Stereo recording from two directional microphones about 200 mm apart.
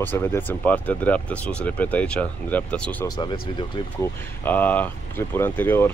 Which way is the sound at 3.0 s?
20° left (ahead or behind).